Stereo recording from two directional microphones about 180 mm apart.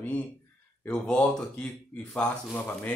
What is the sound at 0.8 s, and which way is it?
Speech, 5° left (ahead or behind).